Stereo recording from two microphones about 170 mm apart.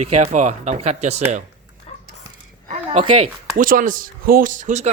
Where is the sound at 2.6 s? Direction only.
40° right (ahead or behind).